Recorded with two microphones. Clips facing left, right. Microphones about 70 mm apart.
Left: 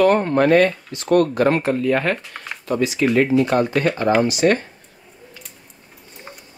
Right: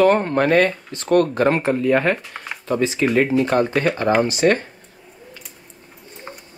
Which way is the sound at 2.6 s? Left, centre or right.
Right.